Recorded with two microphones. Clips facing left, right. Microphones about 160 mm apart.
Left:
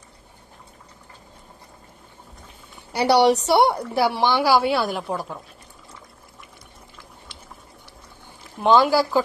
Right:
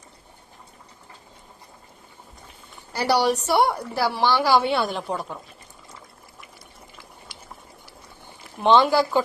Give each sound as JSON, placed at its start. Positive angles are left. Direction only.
{"t": 3.2, "sound": "a woman's voice", "side_deg": 75}
{"t": 3.4, "sound": "a woman's voice", "side_deg": 20}
{"t": 4.5, "sound": "speech", "side_deg": 0}
{"t": 8.6, "sound": "speech", "side_deg": 5}